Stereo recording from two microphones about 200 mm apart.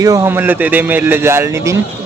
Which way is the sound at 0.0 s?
15° right (ahead or behind).